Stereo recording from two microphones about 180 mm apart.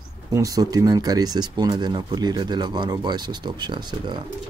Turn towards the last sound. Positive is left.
turn(degrees=-25)  # may be behind; listen again after turning